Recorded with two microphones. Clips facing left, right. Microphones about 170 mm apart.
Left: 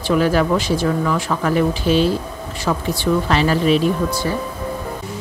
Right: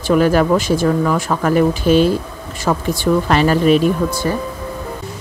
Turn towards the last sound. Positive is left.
turn(degrees=-50)  # may be behind; listen again after turning